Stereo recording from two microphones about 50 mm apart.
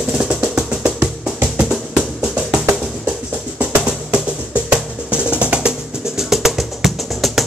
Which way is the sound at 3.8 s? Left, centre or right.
Right.